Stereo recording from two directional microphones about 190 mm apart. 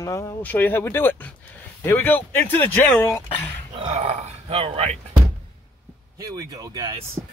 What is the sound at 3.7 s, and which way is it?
Speech, 30° right (ahead or behind).